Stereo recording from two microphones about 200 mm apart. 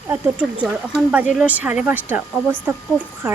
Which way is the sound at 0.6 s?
5° right (ahead or behind).